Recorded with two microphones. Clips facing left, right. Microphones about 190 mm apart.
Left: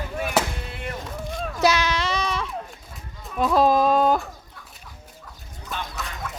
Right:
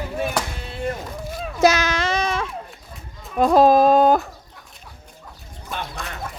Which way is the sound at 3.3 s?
45° right (ahead or behind).